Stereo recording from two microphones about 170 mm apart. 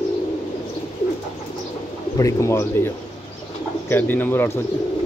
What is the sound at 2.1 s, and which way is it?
Speech, 20° left (ahead or behind).